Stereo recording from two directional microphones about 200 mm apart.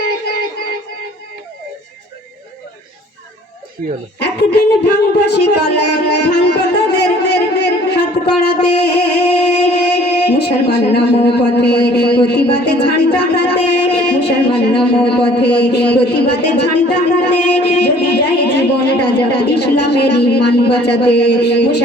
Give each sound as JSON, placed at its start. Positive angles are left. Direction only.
{"t": 0.3, "sound": "music", "side_deg": 50}
{"t": 4.2, "sound": "speech", "side_deg": 55}